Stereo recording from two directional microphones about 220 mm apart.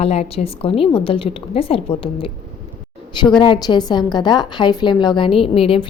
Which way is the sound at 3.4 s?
20° left (ahead or behind).